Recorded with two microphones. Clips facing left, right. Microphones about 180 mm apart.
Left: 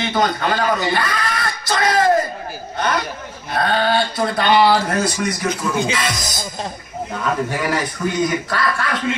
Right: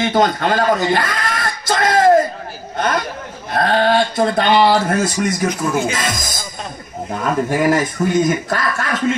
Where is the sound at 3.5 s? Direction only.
45° right (ahead or behind).